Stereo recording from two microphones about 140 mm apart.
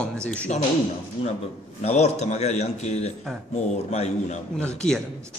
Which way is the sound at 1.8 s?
50° left (ahead or behind).